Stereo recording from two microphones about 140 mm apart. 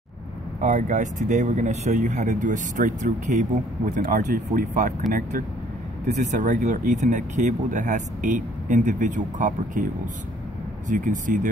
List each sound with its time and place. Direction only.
0.6 s speech: 60° right (ahead or behind)
6.0 s speech: 60° right (ahead or behind)
10.9 s speech: 65° right (ahead or behind)